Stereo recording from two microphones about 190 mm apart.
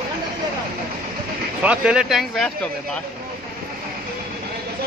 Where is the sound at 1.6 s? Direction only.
5° right (ahead or behind).